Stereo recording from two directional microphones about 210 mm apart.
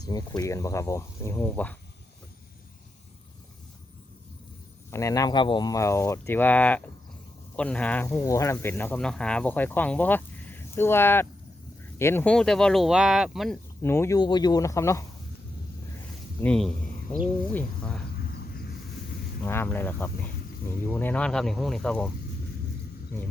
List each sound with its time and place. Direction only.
0.0 s speech: 20° left (ahead or behind)
4.9 s speech: 15° left (ahead or behind); by 13.6 s centre (ahead or behind)
13.8 s speech: 10° left (ahead or behind)
16.4 s a man's voice: 5° left (ahead or behind)
18.2 s vehicle: 50° left (ahead or behind)
19.4 s speech: 10° left (ahead or behind)